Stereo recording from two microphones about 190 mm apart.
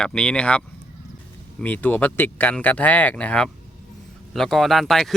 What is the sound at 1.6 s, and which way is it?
Speech, 10° left (ahead or behind).